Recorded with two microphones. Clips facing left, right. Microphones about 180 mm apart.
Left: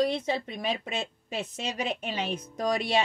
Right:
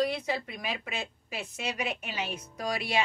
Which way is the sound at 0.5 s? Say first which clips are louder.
Left 5 dB; 25° left (ahead or behind).